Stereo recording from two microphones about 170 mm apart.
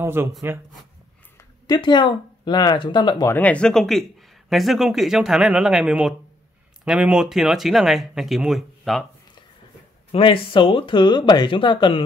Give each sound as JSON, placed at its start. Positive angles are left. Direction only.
{"t": 0.0, "sound": "speech", "side_deg": -15}
{"t": 1.7, "sound": "speech", "side_deg": 25}
{"t": 3.3, "sound": "speech", "side_deg": 5}
{"t": 10.1, "sound": "speech", "side_deg": 30}